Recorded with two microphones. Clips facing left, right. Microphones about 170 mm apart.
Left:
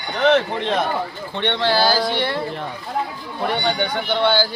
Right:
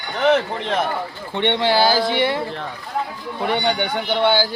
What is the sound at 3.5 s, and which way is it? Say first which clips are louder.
Speech: right 1 dB; 15° right (ahead or behind).